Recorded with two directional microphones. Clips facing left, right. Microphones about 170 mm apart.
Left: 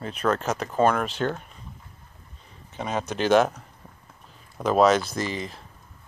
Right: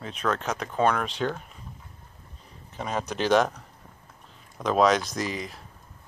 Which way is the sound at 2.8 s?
Centre (ahead or behind).